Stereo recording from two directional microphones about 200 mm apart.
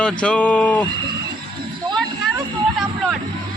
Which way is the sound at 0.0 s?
5° left (ahead or behind).